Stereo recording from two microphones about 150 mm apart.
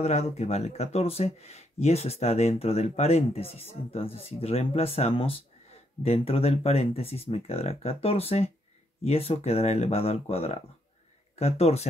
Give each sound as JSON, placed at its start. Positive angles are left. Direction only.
{"t": 0.0, "sound": "speech", "side_deg": 45}